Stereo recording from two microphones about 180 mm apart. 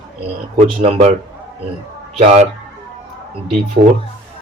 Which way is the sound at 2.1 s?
35° right (ahead or behind).